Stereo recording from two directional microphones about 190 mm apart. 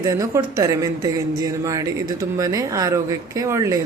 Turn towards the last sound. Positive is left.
turn(degrees=-15)  # may be behind; listen again after turning